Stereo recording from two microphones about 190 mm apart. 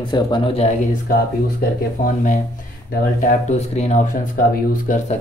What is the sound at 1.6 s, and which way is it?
Speech, 45° left (ahead or behind).